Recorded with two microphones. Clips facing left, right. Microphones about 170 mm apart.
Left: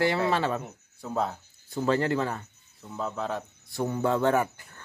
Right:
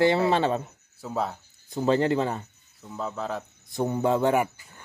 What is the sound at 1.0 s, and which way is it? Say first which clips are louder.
Cricket: even; centre (ahead or behind).